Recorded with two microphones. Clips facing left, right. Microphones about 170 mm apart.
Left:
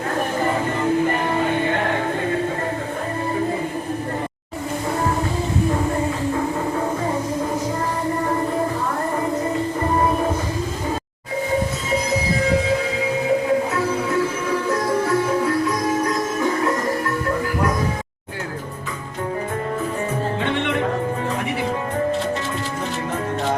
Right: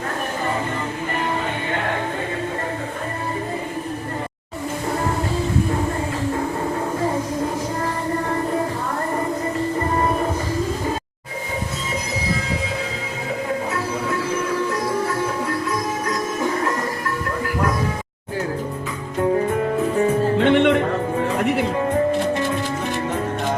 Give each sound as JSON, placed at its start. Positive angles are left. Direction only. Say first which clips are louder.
{"t": 20.4, "sound": "music", "louder": "right 10 dB", "side_deg": -70}